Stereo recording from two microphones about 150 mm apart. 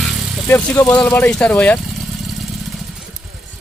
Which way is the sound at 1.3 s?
10° left (ahead or behind).